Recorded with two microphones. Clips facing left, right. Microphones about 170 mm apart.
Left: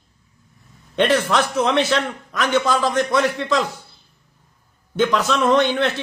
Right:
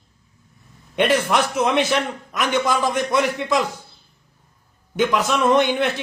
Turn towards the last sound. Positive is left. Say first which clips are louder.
# even
turn(degrees=-10)  # may be behind; listen again after turning